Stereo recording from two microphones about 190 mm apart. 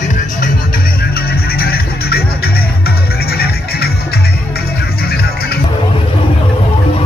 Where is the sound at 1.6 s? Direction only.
55° left (ahead or behind).